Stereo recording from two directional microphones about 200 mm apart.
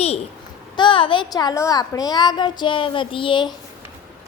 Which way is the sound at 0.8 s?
25° left (ahead or behind).